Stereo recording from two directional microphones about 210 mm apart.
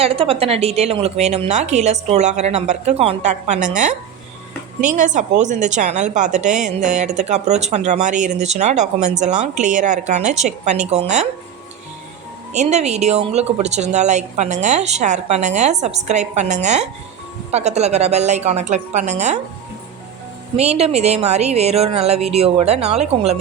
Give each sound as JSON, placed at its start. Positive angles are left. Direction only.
{"t": 0.0, "sound": "speech", "side_deg": -25}
{"t": 12.5, "sound": "speech", "side_deg": -30}
{"t": 20.6, "sound": "speech", "side_deg": -30}